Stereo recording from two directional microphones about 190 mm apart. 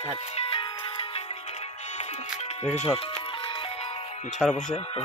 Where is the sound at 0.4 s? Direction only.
30° left (ahead or behind).